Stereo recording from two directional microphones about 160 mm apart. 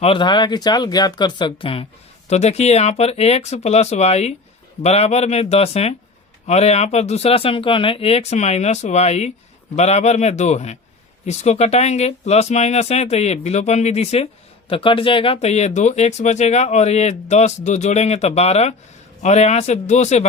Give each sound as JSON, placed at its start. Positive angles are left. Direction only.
{"t": 0.0, "sound": "speech", "side_deg": 30}